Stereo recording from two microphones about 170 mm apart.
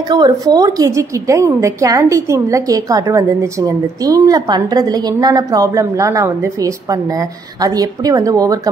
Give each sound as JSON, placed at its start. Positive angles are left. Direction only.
{"t": 0.1, "sound": "a woman's voice", "side_deg": -20}